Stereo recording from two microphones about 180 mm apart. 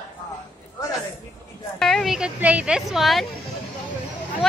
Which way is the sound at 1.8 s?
Centre (ahead or behind).